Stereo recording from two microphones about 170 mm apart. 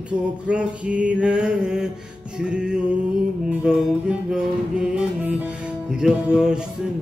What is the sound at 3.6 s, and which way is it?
Music, 5° right (ahead or behind).